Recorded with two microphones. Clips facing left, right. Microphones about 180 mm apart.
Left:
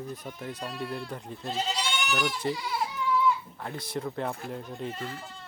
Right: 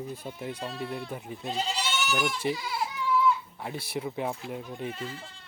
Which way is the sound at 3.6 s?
10° right (ahead or behind).